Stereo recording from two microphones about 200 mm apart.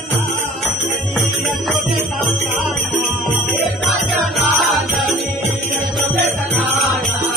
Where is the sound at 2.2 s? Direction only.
Centre (ahead or behind).